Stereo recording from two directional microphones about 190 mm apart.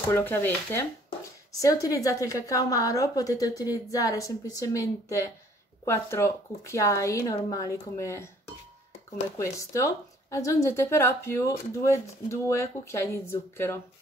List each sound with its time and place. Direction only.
0.1 s a woman's voice: 10° left (ahead or behind)
9.4 s a woman's voice: 15° left (ahead or behind)